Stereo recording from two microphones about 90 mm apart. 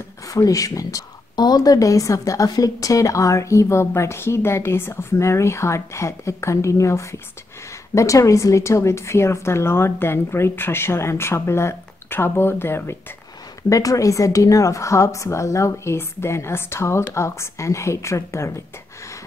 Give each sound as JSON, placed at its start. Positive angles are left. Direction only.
{"t": 0.3, "sound": "a woman's voice", "side_deg": 40}
{"t": 13.7, "sound": "speech", "side_deg": 40}